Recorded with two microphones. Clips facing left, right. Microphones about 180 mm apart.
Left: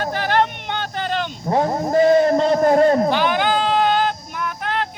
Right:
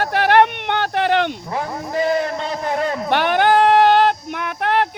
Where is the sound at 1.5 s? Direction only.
35° left (ahead or behind).